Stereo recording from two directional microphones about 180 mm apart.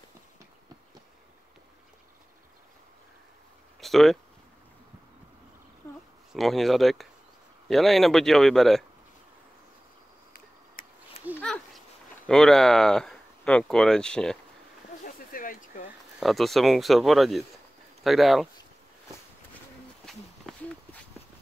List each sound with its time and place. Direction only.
3.8 s speech: centre (ahead or behind)
6.3 s speech: centre (ahead or behind)
11.3 s a sound: 5° left (ahead or behind)
12.3 s speech: 5° left (ahead or behind)
15.3 s a sound: 50° left (ahead or behind)
16.2 s speech: centre (ahead or behind)